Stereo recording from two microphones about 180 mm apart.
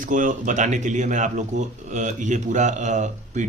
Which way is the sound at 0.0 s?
45° right (ahead or behind).